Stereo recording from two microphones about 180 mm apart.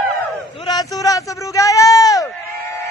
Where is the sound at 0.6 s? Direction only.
20° left (ahead or behind).